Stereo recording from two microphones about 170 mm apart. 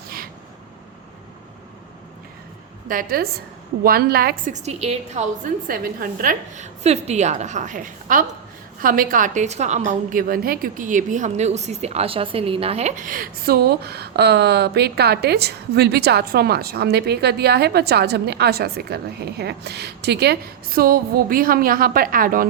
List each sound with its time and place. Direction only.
2.9 s a woman's voice: 55° right (ahead or behind)
4.5 s a woman's voice: 40° right (ahead or behind)
5.6 s a woman's voice: 55° right (ahead or behind)
6.8 s a woman's voice: 40° right (ahead or behind)
13.1 s speech: 60° right (ahead or behind)